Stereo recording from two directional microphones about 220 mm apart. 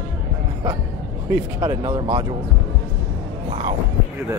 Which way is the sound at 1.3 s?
15° right (ahead or behind).